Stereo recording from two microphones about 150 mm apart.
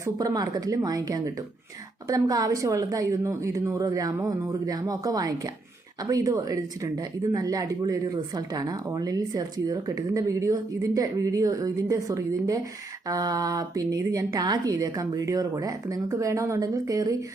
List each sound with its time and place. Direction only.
0.0 s a woman's voice: 25° right (ahead or behind)